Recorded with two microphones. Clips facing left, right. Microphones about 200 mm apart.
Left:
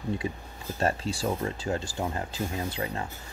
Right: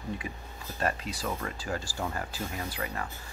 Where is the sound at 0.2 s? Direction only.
25° left (ahead or behind).